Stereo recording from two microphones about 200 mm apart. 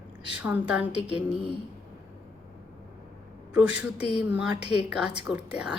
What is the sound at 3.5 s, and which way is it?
Speech, 5° right (ahead or behind).